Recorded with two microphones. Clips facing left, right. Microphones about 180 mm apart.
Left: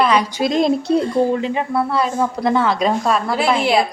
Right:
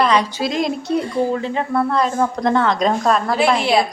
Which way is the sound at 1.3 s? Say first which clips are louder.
Left 1 dB; 15° left (ahead or behind).